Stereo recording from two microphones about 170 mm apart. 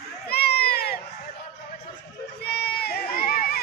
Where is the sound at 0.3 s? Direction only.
70° left (ahead or behind).